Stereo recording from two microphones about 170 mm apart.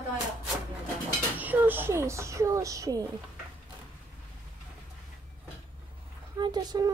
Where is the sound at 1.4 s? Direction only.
10° right (ahead or behind).